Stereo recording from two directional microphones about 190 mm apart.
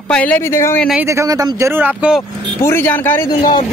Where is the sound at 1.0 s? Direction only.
15° right (ahead or behind).